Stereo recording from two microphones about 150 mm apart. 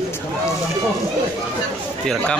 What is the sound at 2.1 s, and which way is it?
Speech, 5° left (ahead or behind).